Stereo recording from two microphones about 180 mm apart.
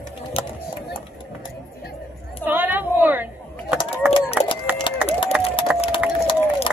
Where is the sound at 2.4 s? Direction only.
10° right (ahead or behind).